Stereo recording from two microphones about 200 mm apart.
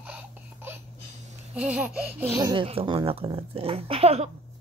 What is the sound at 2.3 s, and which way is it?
Speech, 20° right (ahead or behind).